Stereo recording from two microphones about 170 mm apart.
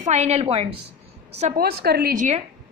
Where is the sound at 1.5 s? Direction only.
65° right (ahead or behind); by 2.4 s 45° right (ahead or behind).